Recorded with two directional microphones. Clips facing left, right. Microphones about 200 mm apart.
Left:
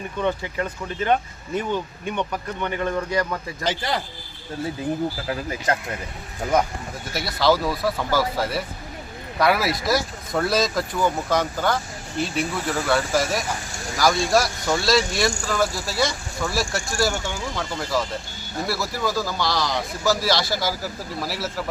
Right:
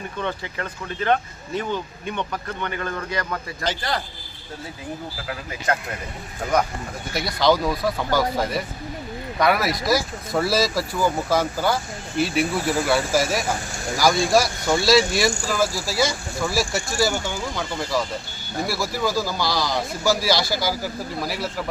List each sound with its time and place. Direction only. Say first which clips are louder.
0.2 s speech: left 5 dB; 10° left (ahead or behind)
5.7 s speech: even; 25° left (ahead or behind)
7.1 s speech: right 1 dB; 5° left (ahead or behind)